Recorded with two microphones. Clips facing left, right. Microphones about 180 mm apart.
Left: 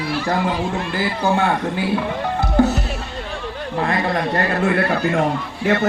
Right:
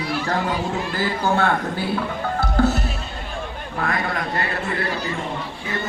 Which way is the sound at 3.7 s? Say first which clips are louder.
Left 5 dB; 30° left (ahead or behind).